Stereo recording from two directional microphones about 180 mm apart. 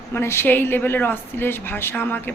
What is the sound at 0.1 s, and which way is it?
A woman's voice, 15° left (ahead or behind).